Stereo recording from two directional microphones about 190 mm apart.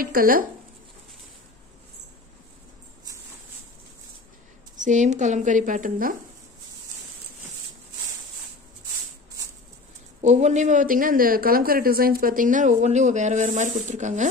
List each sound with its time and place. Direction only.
0.0 s speech: 50° right (ahead or behind)
4.7 s a woman's voice: 40° right (ahead or behind)
10.2 s a woman's voice: 35° right (ahead or behind)